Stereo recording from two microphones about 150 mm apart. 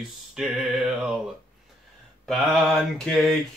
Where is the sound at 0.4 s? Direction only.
Centre (ahead or behind).